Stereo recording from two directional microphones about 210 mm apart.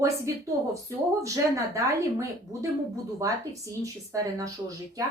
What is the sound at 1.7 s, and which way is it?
Speech, 15° right (ahead or behind).